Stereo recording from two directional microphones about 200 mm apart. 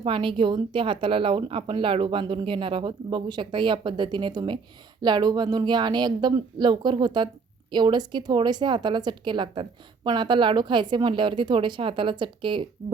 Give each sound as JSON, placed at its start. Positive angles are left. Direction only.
{"t": 0.0, "sound": "a woman's voice", "side_deg": -25}